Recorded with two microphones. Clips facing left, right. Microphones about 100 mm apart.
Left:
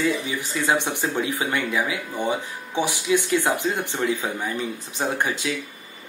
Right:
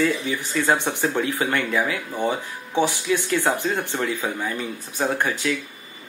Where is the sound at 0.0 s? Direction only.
15° left (ahead or behind).